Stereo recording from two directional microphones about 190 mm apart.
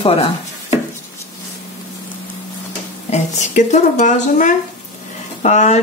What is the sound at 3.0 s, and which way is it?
Speech, 40° left (ahead or behind).